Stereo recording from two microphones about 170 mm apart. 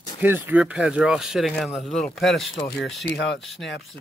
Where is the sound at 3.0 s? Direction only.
80° left.